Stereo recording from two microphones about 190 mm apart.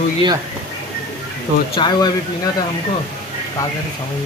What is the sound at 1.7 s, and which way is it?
Speech, 25° left (ahead or behind).